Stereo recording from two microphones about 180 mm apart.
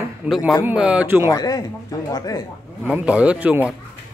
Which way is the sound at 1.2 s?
20° left (ahead or behind).